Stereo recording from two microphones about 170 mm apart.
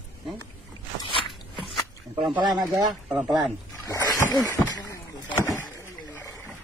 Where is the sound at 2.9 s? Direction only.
Centre (ahead or behind).